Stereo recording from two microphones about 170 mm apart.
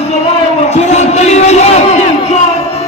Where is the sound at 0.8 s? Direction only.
40° left (ahead or behind).